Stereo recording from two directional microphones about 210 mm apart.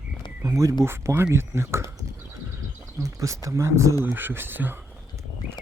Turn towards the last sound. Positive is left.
turn(degrees=-10)  # may be behind; listen again after turning